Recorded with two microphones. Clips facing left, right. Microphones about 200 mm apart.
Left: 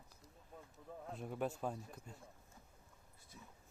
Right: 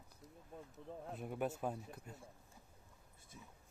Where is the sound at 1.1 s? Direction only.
Centre (ahead or behind).